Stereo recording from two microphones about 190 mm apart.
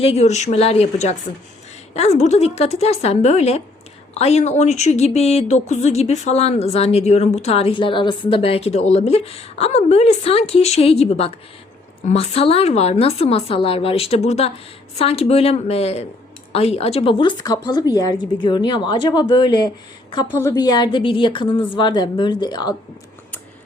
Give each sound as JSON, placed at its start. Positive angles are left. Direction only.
{"t": 0.0, "sound": "a woman's voice", "side_deg": 35}